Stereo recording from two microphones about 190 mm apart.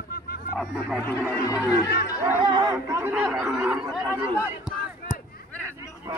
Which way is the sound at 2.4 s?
20° right (ahead or behind).